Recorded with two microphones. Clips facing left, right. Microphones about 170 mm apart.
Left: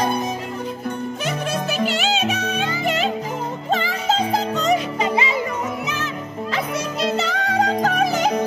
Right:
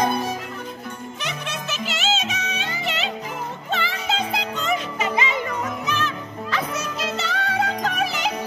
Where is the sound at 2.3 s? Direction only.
55° left (ahead or behind); by 5.2 s 30° left (ahead or behind).